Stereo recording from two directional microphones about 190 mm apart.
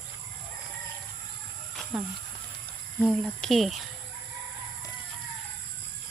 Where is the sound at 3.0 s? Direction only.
Centre (ahead or behind).